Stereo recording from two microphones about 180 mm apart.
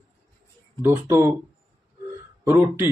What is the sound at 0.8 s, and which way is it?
Speech, 10° right (ahead or behind).